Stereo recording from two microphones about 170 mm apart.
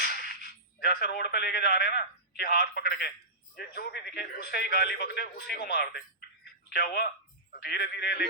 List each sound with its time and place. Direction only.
0.0 s a man's voice: 65° left (ahead or behind)
6.4 s telephone: 70° left (ahead or behind)
7.5 s a man's voice: 70° left (ahead or behind)